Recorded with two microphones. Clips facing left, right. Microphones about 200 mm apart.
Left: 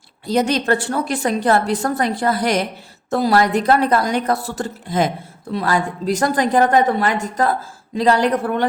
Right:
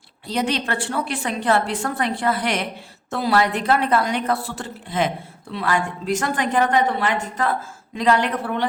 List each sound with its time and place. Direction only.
0.3 s a woman's voice: 45° left (ahead or behind)